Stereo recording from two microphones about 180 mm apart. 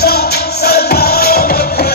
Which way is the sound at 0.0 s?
60° left (ahead or behind).